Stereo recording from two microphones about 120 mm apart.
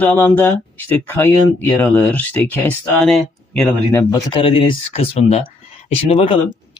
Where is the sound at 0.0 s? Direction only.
20° left (ahead or behind); by 3.7 s 5° left (ahead or behind).